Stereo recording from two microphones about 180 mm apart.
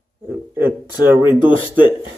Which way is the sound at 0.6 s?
10° right (ahead or behind).